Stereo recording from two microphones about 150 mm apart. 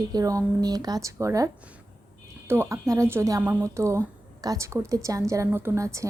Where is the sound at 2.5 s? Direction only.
15° right (ahead or behind).